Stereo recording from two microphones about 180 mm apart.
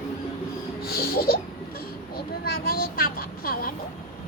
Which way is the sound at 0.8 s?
55° left (ahead or behind).